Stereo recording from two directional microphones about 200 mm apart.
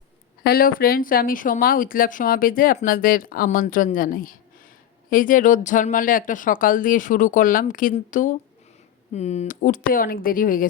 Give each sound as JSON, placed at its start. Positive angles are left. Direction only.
{"t": 0.4, "sound": "speech", "side_deg": 50}